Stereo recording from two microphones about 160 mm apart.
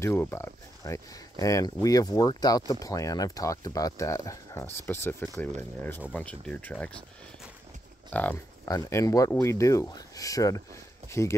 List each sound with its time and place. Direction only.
0.0 s speech: 15° left (ahead or behind)
8.1 s speech: 10° left (ahead or behind)
8.6 s speech: 20° left (ahead or behind)